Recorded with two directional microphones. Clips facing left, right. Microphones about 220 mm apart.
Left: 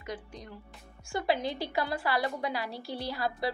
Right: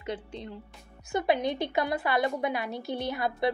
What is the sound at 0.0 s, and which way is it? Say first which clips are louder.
A woman's voice: right 5 dB; 30° right (ahead or behind).